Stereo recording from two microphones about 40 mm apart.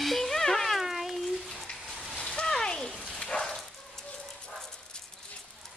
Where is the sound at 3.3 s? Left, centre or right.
Centre.